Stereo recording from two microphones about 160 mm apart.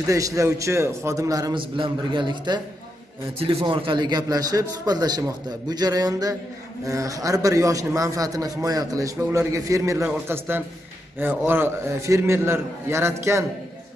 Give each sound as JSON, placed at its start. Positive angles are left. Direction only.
{"t": 0.0, "sound": "a man's voice", "side_deg": -20}